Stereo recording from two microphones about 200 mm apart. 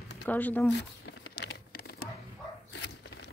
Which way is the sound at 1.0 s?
55° left (ahead or behind).